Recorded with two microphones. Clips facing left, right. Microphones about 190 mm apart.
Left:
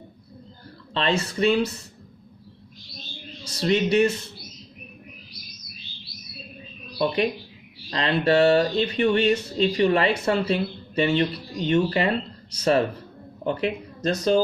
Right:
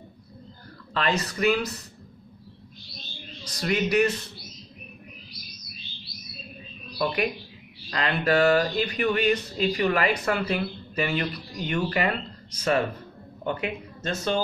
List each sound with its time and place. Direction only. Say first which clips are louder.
0.9 s speech: left 2 dB; 25° left (ahead or behind)
3.5 s speech: left 3 dB; 25° left (ahead or behind)
7.0 s speech: left 3 dB; 25° left (ahead or behind)
13.4 s speech: left 4 dB; 35° left (ahead or behind)